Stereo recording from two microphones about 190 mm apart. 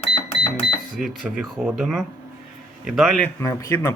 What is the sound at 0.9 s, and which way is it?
Speech, 5° right (ahead or behind).